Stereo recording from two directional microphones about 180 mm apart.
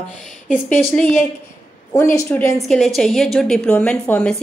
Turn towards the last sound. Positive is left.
turn(degrees=5)  # may be behind; listen again after turning